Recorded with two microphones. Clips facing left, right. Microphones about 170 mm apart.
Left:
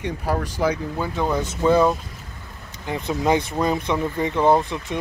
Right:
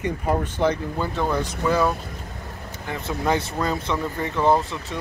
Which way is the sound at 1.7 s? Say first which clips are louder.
Left 5 dB; 20° left (ahead or behind).